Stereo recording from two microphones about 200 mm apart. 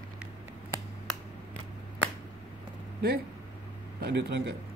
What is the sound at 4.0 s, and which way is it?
Speech, 55° right (ahead or behind).